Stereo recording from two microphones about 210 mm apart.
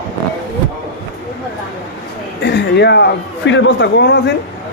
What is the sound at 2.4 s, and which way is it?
A man's voice, 55° left (ahead or behind).